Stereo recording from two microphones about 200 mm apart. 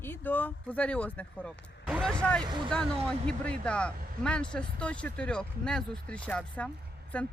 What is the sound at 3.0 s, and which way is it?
Speech, 5° left (ahead or behind).